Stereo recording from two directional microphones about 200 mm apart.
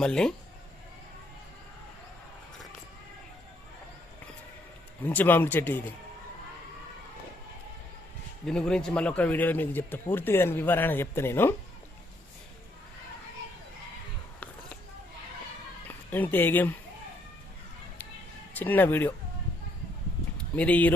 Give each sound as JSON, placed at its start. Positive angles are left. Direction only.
{"t": 0.0, "sound": "speech", "side_deg": 5}
{"t": 5.0, "sound": "speech", "side_deg": 10}
{"t": 8.4, "sound": "speech", "side_deg": 5}
{"t": 15.9, "sound": "speech", "side_deg": 10}
{"t": 18.5, "sound": "speech", "side_deg": 10}
{"t": 20.6, "sound": "speech", "side_deg": 5}